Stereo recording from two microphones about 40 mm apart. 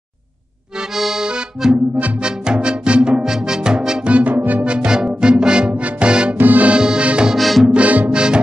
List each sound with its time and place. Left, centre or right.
0.9 s accordion: centre
1.2 s accordion: right
2.2 s music: right
4.1 s music: right
4.6 s music: right
6.3 s music: right
6.7 s accordion: right
7.1 s music: right
7.3 s music: centre
7.7 s music: right
8.1 s music: right